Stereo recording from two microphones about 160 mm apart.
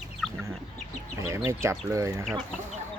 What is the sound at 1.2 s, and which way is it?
Speech, 20° right (ahead or behind).